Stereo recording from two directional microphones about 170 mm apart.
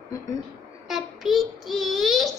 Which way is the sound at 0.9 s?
Centre (ahead or behind).